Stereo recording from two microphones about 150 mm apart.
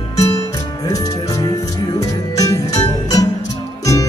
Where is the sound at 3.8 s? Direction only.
20° left (ahead or behind).